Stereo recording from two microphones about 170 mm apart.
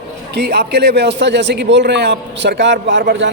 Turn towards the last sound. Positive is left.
turn(degrees=-90)